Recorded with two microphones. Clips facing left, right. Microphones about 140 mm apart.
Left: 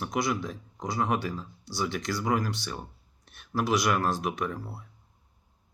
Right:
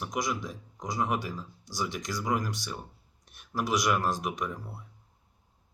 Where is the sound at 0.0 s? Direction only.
15° right (ahead or behind).